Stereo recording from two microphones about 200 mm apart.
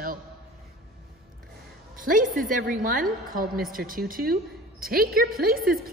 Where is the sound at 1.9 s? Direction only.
40° right (ahead or behind).